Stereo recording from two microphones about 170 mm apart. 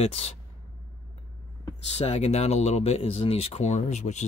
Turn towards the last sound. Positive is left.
turn(degrees=40)  # may be behind; listen again after turning